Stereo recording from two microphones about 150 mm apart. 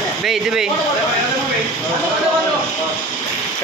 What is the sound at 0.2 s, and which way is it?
Speech, 5° right (ahead or behind).